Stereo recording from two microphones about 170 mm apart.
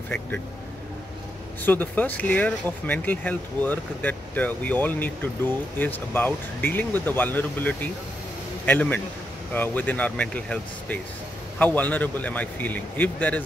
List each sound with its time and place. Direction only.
1.6 s speech: 10° left (ahead or behind)